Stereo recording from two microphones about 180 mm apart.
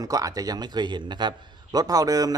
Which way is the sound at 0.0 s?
20° right (ahead or behind).